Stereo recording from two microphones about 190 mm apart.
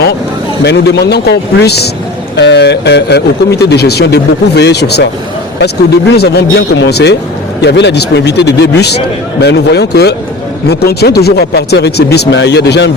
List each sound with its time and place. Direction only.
0.6 s speech: 60° left (ahead or behind)